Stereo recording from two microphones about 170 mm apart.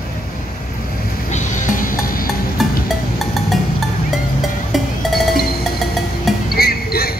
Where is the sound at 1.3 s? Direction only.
50° left (ahead or behind).